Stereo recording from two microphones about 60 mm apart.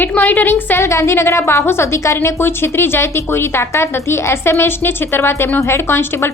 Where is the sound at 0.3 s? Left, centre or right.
Left.